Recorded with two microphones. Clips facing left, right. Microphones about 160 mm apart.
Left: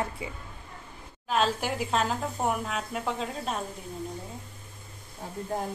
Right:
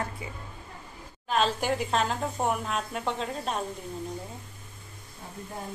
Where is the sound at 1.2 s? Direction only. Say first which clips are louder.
Right 1 dB; 5° left (ahead or behind).